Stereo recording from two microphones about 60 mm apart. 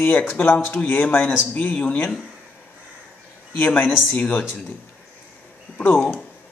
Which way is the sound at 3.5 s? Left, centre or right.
Left.